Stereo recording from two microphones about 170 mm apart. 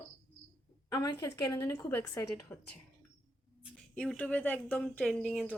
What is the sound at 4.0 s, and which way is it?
Speech, 5° left (ahead or behind).